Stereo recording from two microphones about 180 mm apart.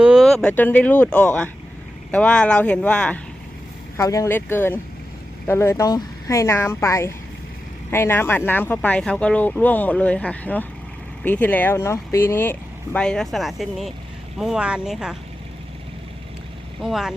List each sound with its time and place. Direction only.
0.0 s speech: centre (ahead or behind)
3.9 s speech: 15° left (ahead or behind); by 15.1 s 5° right (ahead or behind)
16.8 s speech: centre (ahead or behind)